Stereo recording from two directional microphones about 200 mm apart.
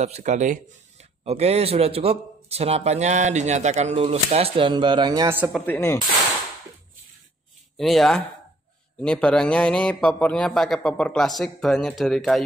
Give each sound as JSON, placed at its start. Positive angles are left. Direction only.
{"t": 0.0, "sound": "a man's voice", "side_deg": -35}
{"t": 5.5, "sound": "speech", "side_deg": 10}
{"t": 7.7, "sound": "a man's voice", "side_deg": 0}